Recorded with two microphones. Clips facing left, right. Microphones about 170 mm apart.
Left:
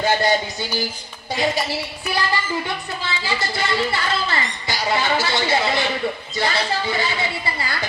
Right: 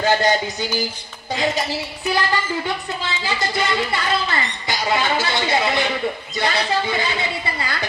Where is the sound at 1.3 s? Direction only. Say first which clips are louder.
Even; 20° right (ahead or behind).